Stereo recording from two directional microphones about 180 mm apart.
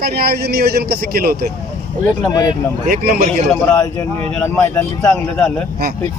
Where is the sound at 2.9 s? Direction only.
50° right (ahead or behind).